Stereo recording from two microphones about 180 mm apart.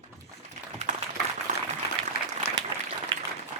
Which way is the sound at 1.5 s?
45° right (ahead or behind).